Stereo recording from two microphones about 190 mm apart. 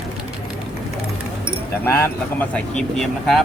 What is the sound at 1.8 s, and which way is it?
Speech, 10° left (ahead or behind).